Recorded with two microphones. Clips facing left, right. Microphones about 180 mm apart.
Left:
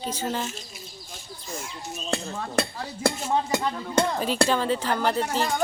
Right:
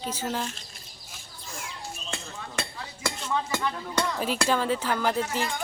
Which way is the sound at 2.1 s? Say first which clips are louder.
Left 11 dB; 45° left (ahead or behind).